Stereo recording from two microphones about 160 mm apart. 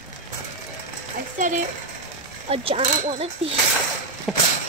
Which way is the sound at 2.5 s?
35° right (ahead or behind).